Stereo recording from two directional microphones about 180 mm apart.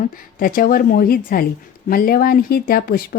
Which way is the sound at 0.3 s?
50° left (ahead or behind).